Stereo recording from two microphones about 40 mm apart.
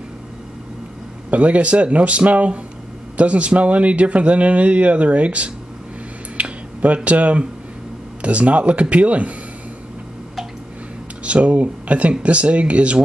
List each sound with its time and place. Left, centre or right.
1.3 s speech: right
6.4 s a sound: right
7.1 s speech: right
11.2 s speech: right